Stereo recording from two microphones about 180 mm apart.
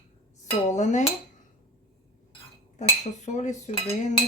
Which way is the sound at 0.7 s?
40° left (ahead or behind).